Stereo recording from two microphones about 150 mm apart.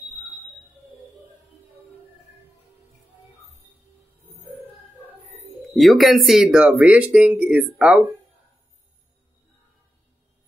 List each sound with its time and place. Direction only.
5.7 s speech: centre (ahead or behind)